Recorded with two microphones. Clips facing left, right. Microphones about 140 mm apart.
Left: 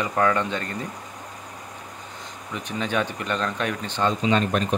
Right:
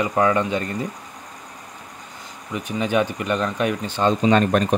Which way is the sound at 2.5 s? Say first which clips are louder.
Right 5 dB; 10° right (ahead or behind).